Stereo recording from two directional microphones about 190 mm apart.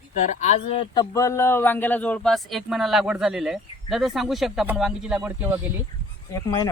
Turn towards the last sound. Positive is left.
turn(degrees=20)  # may be behind; listen again after turning